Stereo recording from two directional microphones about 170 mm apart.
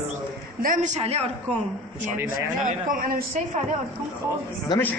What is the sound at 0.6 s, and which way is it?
Speech, 50° right (ahead or behind).